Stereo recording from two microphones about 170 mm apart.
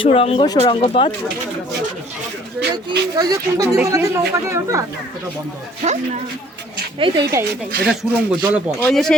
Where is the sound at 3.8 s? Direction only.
20° right (ahead or behind).